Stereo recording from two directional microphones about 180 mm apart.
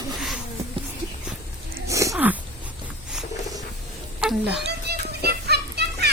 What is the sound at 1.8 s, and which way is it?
Wheeze, 15° right (ahead or behind).